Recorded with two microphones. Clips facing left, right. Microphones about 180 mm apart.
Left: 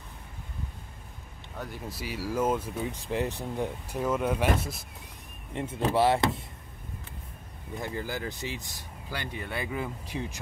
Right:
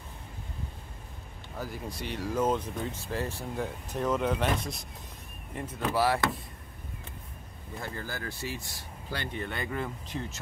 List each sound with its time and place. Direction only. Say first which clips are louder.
1.6 s speech: right 1 dB; centre (ahead or behind)
5.5 s speech: left 4 dB; 25° left (ahead or behind)
7.8 s speech: left 4 dB; 15° left (ahead or behind)